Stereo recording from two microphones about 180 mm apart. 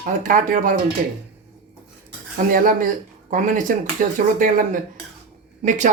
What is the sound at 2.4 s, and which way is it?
Speech, 50° right (ahead or behind).